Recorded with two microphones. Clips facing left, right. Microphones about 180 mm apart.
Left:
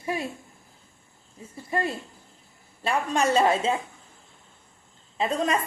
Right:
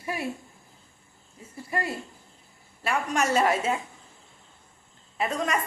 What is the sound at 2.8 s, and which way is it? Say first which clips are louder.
Speech: left 2 dB; 30° left (ahead or behind).